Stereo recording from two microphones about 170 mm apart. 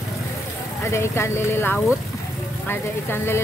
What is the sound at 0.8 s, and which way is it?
Speech, 15° left (ahead or behind).